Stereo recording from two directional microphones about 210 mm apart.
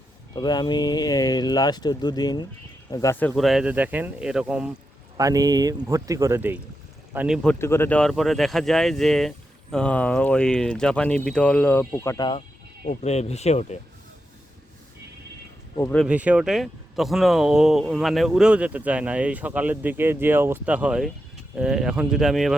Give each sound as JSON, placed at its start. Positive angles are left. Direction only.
{"t": 0.3, "sound": "speech", "side_deg": 20}
{"t": 5.1, "sound": "speech", "side_deg": -15}
{"t": 7.4, "sound": "speech", "side_deg": 10}
{"t": 12.8, "sound": "speech", "side_deg": 30}
{"t": 15.8, "sound": "speech", "side_deg": 10}
{"t": 16.0, "sound": "speech", "side_deg": -5}